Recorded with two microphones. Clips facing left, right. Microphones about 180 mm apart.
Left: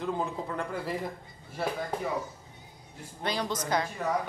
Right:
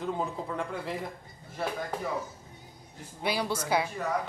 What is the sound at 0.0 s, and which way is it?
Speech, centre (ahead or behind).